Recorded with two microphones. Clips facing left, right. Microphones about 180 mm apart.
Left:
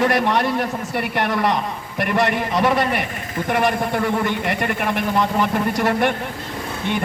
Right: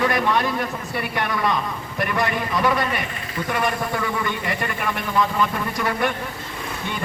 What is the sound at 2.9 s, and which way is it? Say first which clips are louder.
A man's voice: left 4 dB; 55° left (ahead or behind).